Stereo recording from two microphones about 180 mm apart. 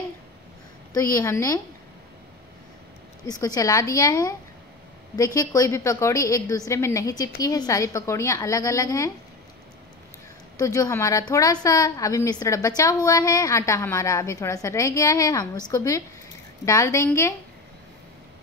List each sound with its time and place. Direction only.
0.9 s a woman's voice: 20° left (ahead or behind)
3.3 s a woman's voice: 20° left (ahead or behind)
10.6 s a woman's voice: 20° left (ahead or behind)